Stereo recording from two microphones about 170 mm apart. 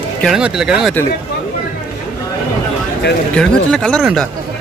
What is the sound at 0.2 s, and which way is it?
Speech, 5° right (ahead or behind).